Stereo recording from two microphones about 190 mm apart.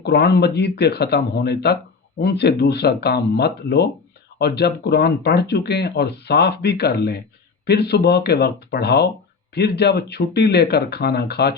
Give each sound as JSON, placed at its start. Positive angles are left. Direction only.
{"t": 0.0, "sound": "speech", "side_deg": 60}